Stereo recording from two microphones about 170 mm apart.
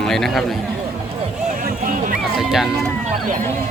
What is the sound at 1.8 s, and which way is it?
Music, 50° right (ahead or behind).